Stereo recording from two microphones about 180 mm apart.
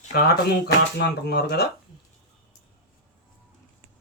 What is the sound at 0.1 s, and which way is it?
Speech, 60° left (ahead or behind).